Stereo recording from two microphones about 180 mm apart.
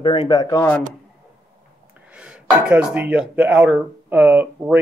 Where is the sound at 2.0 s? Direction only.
5° right (ahead or behind).